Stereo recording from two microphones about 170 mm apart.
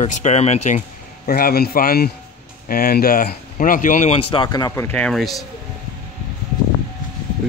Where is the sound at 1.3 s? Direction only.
65° left (ahead or behind); by 4.2 s 45° left (ahead or behind).